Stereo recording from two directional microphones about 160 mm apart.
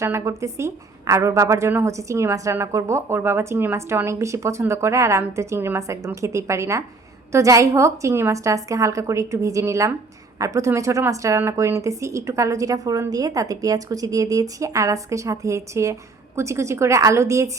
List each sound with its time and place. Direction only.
0.0 s a woman's voice: 20° right (ahead or behind)